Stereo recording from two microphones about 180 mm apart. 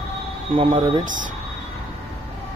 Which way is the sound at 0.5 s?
30° right (ahead or behind).